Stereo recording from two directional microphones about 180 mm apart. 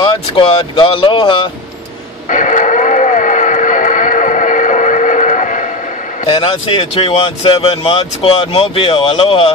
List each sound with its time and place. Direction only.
0.0 s speech: 25° left (ahead or behind)
2.2 s radio: 45° left (ahead or behind)
6.2 s speech: 30° left (ahead or behind)